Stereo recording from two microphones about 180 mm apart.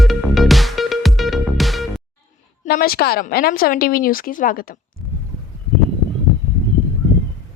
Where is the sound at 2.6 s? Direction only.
55° left (ahead or behind).